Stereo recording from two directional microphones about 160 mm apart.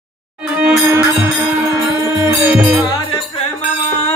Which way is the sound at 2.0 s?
10° right (ahead or behind).